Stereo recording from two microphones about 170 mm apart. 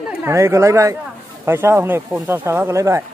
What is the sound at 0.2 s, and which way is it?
Speech, 15° right (ahead or behind).